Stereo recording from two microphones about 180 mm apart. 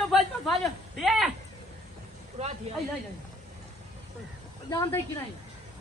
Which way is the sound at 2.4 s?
40° right (ahead or behind).